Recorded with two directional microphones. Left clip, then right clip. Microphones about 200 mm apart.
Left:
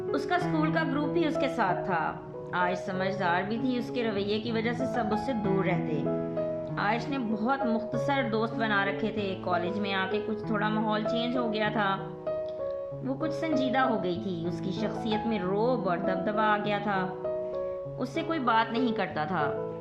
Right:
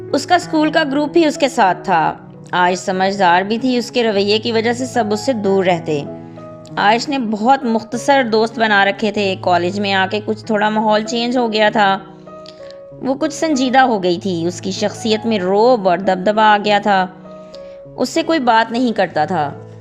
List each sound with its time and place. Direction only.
0.1 s a woman's voice: 45° right (ahead or behind)
13.1 s a woman's voice: 45° right (ahead or behind)